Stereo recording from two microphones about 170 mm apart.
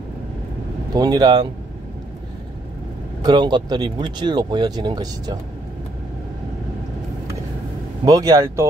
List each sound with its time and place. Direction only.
0.9 s speech: 25° right (ahead or behind)
3.2 s speech: 25° right (ahead or behind)
8.0 s speech: 20° right (ahead or behind)